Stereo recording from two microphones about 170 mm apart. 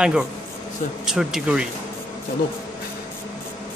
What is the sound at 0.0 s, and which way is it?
Speech, 5° right (ahead or behind).